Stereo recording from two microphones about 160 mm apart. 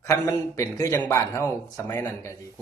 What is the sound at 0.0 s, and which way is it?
Speech, 20° left (ahead or behind).